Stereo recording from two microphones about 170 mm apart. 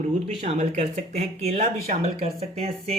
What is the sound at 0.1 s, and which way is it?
Speech, 45° right (ahead or behind).